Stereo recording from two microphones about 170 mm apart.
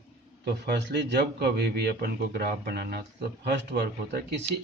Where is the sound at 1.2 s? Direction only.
70° right (ahead or behind).